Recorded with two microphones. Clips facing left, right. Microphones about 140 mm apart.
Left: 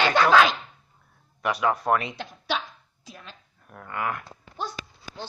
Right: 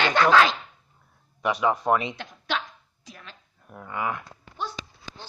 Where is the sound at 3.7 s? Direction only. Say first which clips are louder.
Even; 10° right (ahead or behind).